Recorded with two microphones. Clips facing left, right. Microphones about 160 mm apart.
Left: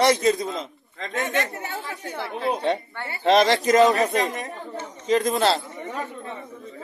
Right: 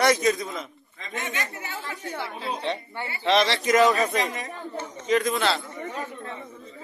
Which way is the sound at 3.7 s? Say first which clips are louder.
Even; 30° left (ahead or behind).